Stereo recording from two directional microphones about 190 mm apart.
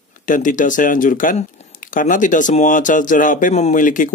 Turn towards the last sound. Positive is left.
turn(degrees=45)  # may be behind; listen again after turning